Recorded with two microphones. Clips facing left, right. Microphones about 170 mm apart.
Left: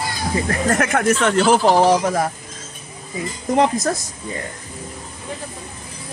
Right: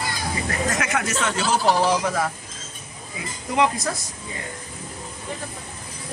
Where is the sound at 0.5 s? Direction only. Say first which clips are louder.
Left 6 dB; 55° left (ahead or behind).